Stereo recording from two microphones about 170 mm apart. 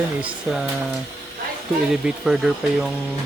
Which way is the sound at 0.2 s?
10° right (ahead or behind).